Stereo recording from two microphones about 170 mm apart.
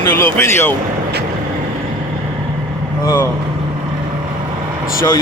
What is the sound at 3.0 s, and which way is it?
Speech, 20° left (ahead or behind).